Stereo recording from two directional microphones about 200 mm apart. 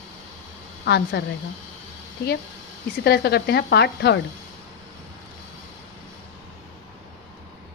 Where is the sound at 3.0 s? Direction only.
55° left (ahead or behind).